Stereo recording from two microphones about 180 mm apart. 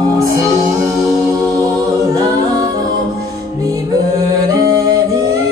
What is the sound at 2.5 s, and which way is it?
Music, 20° right (ahead or behind).